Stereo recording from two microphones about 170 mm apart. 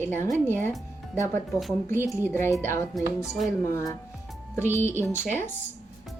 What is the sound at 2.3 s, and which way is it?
A woman's voice, 15° left (ahead or behind).